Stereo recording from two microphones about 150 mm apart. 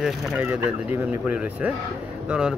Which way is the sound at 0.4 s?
15° right (ahead or behind).